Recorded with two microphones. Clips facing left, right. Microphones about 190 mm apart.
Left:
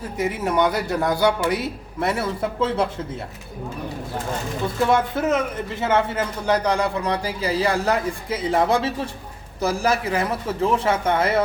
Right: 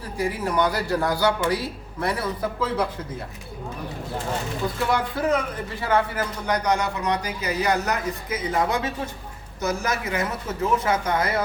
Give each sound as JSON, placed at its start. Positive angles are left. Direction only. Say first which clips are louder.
{"t": 0.2, "sound": "speech", "louder": "left 2 dB", "side_deg": 20}
{"t": 4.9, "sound": "speech", "louder": "left 2 dB", "side_deg": 25}